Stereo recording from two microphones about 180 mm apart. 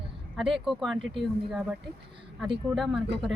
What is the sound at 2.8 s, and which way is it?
Speech, centre (ahead or behind).